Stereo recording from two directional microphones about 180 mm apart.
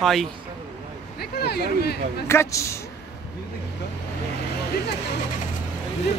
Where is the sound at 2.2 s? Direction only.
15° left (ahead or behind).